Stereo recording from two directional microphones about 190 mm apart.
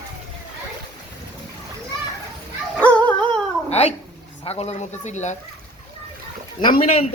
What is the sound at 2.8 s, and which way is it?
Dog, 5° left (ahead or behind).